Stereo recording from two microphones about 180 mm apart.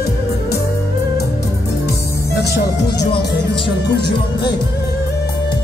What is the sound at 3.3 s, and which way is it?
Music, 70° left (ahead or behind).